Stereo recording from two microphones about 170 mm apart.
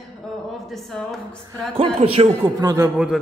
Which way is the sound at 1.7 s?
35° right (ahead or behind).